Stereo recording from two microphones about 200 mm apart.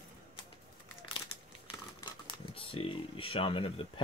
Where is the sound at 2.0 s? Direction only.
25° left (ahead or behind).